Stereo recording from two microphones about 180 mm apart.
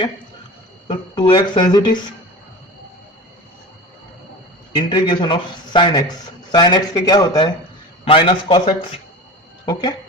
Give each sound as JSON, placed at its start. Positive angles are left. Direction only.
{"t": 0.9, "sound": "speech", "side_deg": 25}
{"t": 4.7, "sound": "speech", "side_deg": 25}